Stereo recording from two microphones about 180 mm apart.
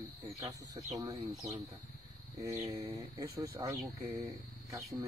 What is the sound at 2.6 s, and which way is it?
Speech, 15° right (ahead or behind).